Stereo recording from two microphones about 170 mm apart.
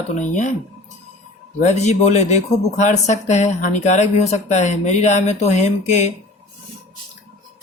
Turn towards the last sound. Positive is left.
turn(degrees=45)  # may be behind; listen again after turning